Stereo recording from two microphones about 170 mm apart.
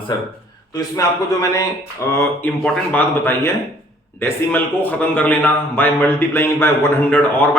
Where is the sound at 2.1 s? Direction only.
15° left (ahead or behind).